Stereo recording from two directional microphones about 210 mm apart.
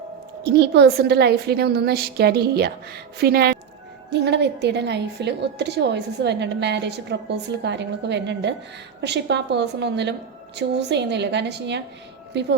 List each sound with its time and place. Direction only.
0.4 s a woman's voice: 50° right (ahead or behind)